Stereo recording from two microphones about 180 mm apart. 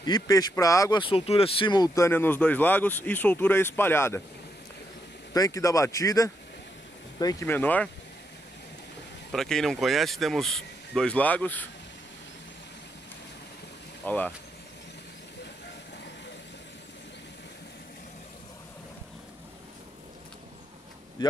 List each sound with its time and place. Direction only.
0.0 s speech: 20° left (ahead or behind)
5.3 s speech: 20° left (ahead or behind)
9.3 s speech: centre (ahead or behind)
14.0 s speech: 10° left (ahead or behind)
21.2 s speech: 25° left (ahead or behind)